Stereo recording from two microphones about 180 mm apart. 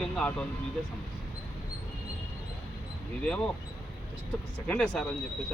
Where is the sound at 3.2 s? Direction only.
5° left (ahead or behind).